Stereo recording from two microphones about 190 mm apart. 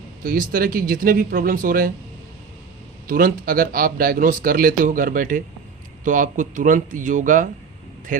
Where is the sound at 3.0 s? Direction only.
50° right (ahead or behind).